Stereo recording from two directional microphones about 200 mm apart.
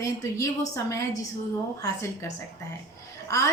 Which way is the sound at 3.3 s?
15° left (ahead or behind).